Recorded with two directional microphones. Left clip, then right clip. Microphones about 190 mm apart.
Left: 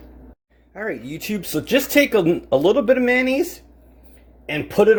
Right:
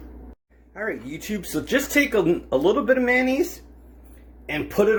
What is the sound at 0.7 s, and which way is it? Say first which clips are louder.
Speech: left 2 dB; 60° left (ahead or behind).